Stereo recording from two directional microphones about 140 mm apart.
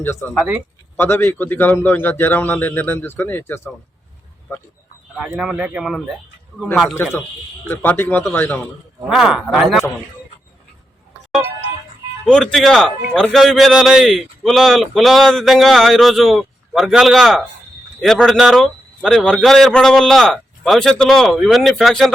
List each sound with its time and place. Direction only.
0.0 s a man's voice: 15° left (ahead or behind)
0.3 s a man's voice: 10° right (ahead or behind)
0.9 s a man's voice: 15° left (ahead or behind)
5.4 s a man's voice: 5° right (ahead or behind)
6.9 s a man's voice: 20° left (ahead or behind)
9.0 s a man's voice: 5° right (ahead or behind)
12.2 s a man's voice: 5° left (ahead or behind)